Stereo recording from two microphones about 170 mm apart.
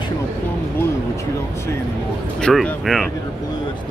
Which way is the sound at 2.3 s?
5° left (ahead or behind).